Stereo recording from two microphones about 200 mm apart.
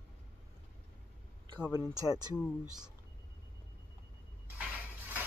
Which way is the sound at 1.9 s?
20° right (ahead or behind).